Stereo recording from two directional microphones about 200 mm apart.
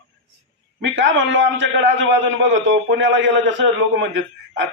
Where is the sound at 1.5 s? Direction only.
65° right (ahead or behind).